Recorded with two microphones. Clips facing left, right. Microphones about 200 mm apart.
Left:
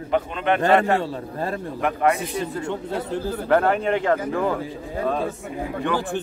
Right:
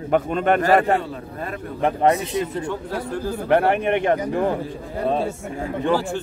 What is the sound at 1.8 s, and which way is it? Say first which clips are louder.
Speech: right 3 dB; 30° right (ahead or behind).